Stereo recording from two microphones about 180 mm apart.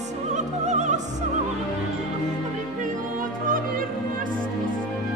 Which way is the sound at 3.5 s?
50° right (ahead or behind).